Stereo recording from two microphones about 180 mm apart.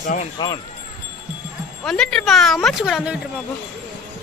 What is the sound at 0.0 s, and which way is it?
Speech, 45° left (ahead or behind).